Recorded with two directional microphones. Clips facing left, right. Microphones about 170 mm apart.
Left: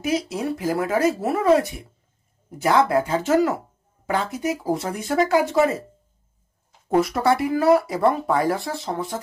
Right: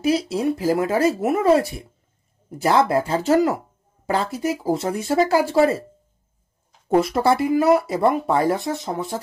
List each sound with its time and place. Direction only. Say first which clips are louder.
0.0 s speech: right 4 dB; 30° right (ahead or behind)
7.0 s speech: right 1 dB; 30° right (ahead or behind)